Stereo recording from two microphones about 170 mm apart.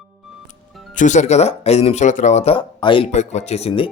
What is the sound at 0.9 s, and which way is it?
Speech, 45° left (ahead or behind).